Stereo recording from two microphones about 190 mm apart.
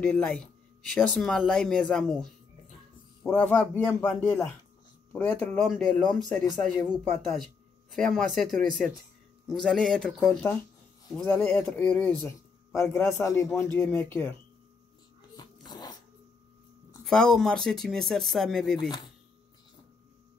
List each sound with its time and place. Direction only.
0.0 s a man's voice: 5° left (ahead or behind)
15.3 s a sound: 20° left (ahead or behind)
17.0 s speech: 5° left (ahead or behind)